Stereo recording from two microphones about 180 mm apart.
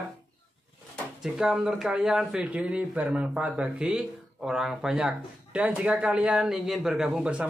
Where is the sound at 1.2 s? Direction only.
5° right (ahead or behind).